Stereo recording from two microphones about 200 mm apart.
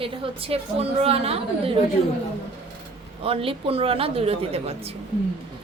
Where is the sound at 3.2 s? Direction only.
25° right (ahead or behind).